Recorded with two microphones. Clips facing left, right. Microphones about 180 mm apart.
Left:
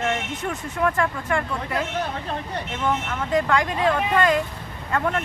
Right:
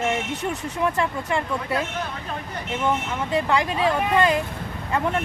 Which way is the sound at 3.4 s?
20° right (ahead or behind).